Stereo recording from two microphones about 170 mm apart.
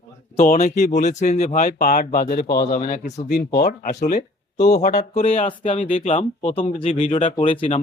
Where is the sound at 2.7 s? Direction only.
50° left (ahead or behind).